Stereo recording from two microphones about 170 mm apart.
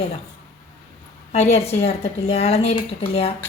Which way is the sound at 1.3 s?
40° left (ahead or behind).